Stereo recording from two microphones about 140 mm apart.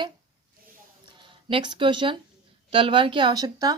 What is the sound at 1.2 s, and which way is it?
Speech, 35° right (ahead or behind).